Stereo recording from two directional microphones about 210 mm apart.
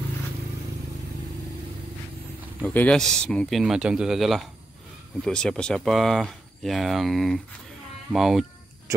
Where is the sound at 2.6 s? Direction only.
5° left (ahead or behind).